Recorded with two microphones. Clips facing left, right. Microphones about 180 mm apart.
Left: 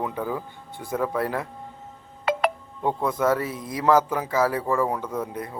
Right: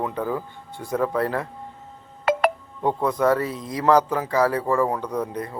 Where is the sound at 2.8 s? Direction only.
15° right (ahead or behind).